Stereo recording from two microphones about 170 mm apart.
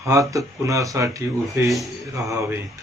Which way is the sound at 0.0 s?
20° right (ahead or behind).